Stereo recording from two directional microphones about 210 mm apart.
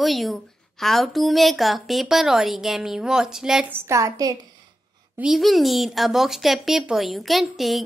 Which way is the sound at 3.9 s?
15° right (ahead or behind).